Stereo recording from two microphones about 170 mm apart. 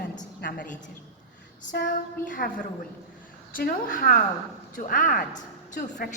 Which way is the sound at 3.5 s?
55° left (ahead or behind).